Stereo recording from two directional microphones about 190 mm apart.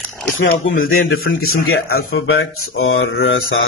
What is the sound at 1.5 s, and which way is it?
A man's voice, 90° left.